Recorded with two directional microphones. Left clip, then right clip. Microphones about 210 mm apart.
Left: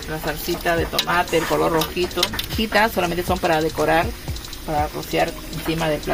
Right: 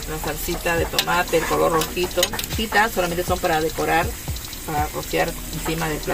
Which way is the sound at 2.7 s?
35° left (ahead or behind).